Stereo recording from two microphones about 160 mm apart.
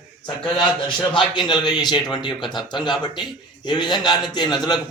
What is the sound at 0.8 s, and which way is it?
A man's voice, 30° left (ahead or behind).